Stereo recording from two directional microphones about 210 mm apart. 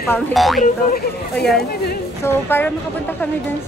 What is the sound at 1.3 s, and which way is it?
A woman's voice, 5° left (ahead or behind).